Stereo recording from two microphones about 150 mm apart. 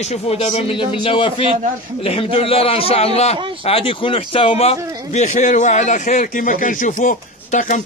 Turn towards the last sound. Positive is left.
turn(degrees=60)  # may be behind; listen again after turning